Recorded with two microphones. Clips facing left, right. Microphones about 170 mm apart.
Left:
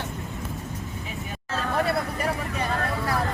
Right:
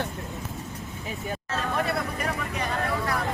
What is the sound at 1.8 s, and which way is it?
Vehicle, 30° left (ahead or behind).